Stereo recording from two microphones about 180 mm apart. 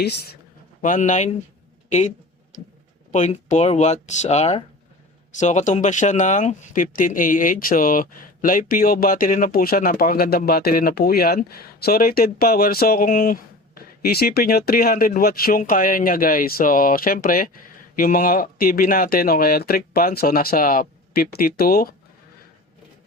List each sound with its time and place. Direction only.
0.8 s speech: 45° left (ahead or behind)
1.9 s a sound: 40° left (ahead or behind)
3.1 s speech: 40° left (ahead or behind); by 21.8 s 55° left (ahead or behind)